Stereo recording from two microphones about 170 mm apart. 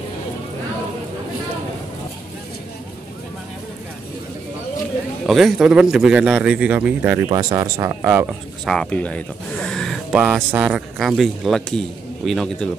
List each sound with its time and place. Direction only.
5.2 s a man's voice: centre (ahead or behind)
7.2 s speech: 20° right (ahead or behind)
8.6 s a man's voice: 5° left (ahead or behind)
10.1 s a man's voice: 10° right (ahead or behind)